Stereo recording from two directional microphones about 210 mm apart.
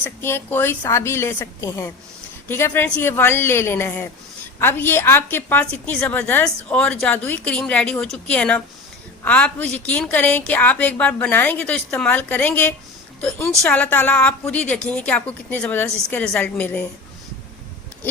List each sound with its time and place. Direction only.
0.0 s a woman's voice: 10° left (ahead or behind)